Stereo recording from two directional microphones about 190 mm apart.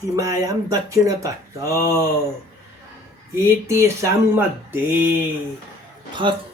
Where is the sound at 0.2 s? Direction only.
15° right (ahead or behind).